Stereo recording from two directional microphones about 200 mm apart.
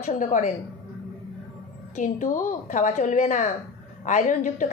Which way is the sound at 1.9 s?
40° left (ahead or behind).